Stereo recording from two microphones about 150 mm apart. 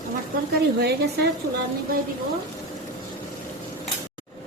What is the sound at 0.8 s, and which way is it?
Speech, 90° right.